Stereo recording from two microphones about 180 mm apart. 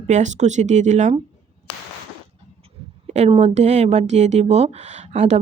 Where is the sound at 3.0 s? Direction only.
35° right (ahead or behind).